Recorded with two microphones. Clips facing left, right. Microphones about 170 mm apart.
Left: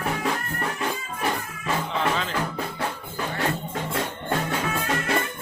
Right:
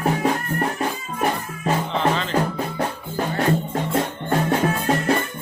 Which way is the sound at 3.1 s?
35° right (ahead or behind).